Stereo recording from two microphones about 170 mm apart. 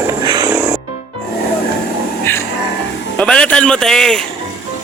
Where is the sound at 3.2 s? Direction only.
5° left (ahead or behind).